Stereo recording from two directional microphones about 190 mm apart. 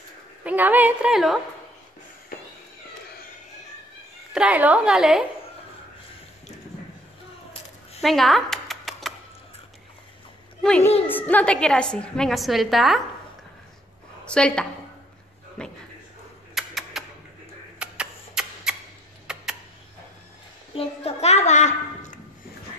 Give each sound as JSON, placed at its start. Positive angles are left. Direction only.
{"t": 0.4, "sound": "a woman's voice", "side_deg": -10}
{"t": 4.3, "sound": "a woman's voice", "side_deg": -5}
{"t": 8.0, "sound": "a sound", "side_deg": 0}
{"t": 10.6, "sound": "a woman's voice", "side_deg": 5}
{"t": 14.2, "sound": "a woman's voice", "side_deg": 5}
{"t": 15.6, "sound": "a sound", "side_deg": 5}
{"t": 17.7, "sound": "camera", "side_deg": -5}
{"t": 19.3, "sound": "a sound", "side_deg": -5}
{"t": 20.7, "sound": "a child's voice", "side_deg": 30}